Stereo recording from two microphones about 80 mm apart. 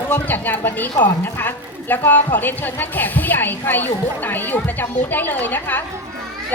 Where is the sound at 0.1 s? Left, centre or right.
Left.